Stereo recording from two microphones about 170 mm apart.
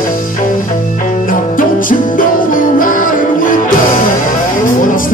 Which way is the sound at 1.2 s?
55° left (ahead or behind).